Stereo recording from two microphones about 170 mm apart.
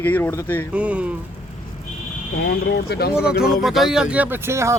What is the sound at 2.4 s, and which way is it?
Speech, 70° left (ahead or behind).